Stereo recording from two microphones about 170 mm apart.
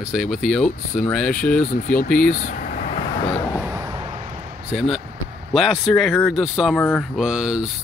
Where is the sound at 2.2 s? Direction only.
50° left (ahead or behind).